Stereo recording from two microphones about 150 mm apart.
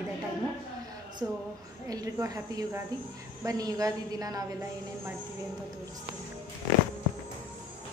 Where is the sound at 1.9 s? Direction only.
25° right (ahead or behind).